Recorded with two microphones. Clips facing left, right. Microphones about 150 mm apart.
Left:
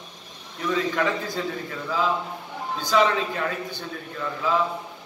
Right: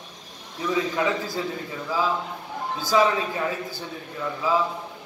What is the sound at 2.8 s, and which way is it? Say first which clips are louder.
A man's voice: even; 10° right (ahead or behind).